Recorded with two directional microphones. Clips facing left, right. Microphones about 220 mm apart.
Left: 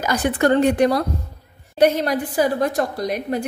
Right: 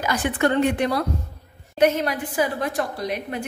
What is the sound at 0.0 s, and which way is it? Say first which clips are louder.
A woman's voice: left 3 dB; 40° left (ahead or behind).